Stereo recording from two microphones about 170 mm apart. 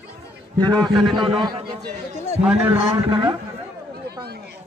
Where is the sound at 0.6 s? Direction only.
5° left (ahead or behind).